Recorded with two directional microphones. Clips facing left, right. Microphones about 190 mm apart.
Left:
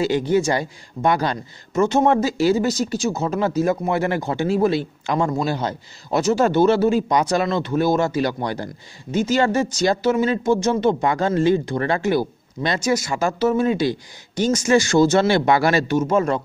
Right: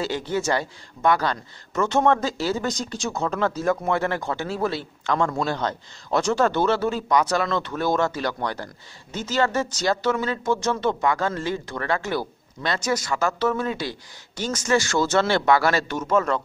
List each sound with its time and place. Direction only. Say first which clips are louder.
0.0 s speech: left 7 dB; 15° left (ahead or behind)